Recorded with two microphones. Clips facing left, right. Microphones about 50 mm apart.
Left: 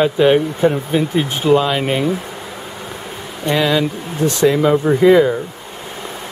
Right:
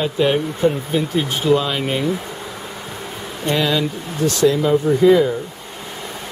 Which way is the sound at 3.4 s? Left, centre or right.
Centre.